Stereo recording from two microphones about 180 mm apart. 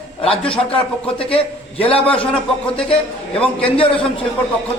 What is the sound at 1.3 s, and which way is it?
Speech, 30° left (ahead or behind).